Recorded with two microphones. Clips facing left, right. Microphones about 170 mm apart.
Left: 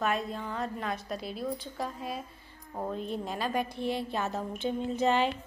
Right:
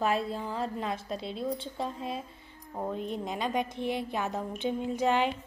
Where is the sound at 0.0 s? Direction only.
30° right (ahead or behind); by 5.3 s 15° right (ahead or behind).